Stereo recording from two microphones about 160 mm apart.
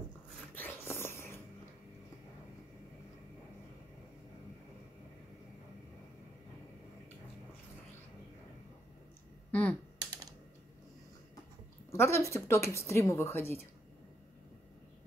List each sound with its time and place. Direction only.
0.6 s a sound: 15° left (ahead or behind)
9.5 s computer keyboard: 10° left (ahead or behind)
11.9 s speech: 15° left (ahead or behind)